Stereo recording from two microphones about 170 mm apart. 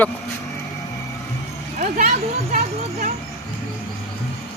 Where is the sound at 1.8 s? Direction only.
50° right (ahead or behind).